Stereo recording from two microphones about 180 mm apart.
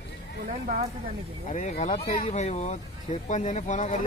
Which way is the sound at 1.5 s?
40° left (ahead or behind).